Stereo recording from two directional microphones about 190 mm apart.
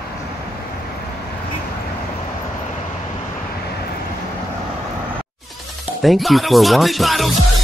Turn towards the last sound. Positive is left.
turn(degrees=0)  # may be behind; listen again after turning